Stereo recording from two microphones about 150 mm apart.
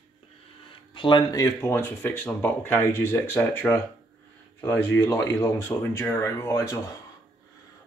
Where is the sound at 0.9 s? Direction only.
35° left (ahead or behind).